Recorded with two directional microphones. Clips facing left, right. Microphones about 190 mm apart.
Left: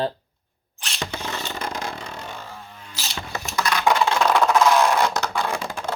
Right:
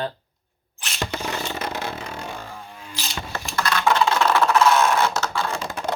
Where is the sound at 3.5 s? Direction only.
15° left (ahead or behind).